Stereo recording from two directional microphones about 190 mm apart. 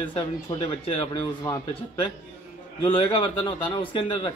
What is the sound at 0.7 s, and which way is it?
Speech, 30° left (ahead or behind).